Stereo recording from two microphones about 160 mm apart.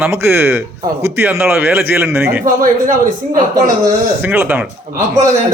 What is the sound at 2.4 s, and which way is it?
Speech, 60° right (ahead or behind).